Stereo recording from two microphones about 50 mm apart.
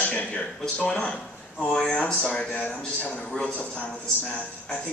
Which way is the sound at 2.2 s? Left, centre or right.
Centre.